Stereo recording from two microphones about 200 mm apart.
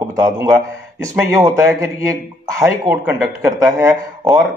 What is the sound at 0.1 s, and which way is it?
Speech, 15° right (ahead or behind).